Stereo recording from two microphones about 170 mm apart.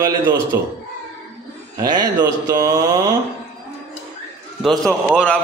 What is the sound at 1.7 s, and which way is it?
Speech, 25° right (ahead or behind).